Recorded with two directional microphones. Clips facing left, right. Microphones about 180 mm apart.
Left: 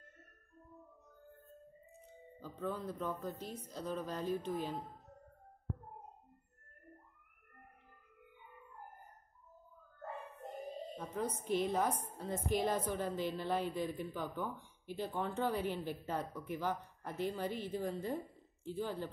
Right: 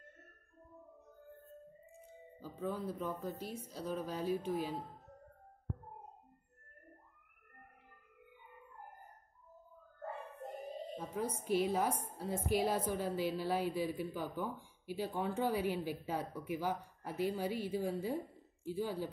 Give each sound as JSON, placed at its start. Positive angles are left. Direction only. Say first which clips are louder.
{"t": 2.4, "sound": "a woman's voice", "louder": "right 1 dB", "side_deg": -10}
{"t": 11.0, "sound": "a woman's voice", "louder": "even", "side_deg": -10}